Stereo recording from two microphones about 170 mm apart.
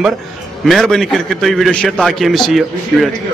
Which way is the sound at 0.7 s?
Centre (ahead or behind).